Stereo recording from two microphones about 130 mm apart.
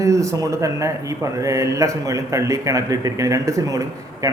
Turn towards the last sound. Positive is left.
turn(degrees=-25)  # may be behind; listen again after turning